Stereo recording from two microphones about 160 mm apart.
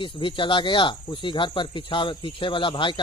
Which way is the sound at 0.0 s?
30° left (ahead or behind).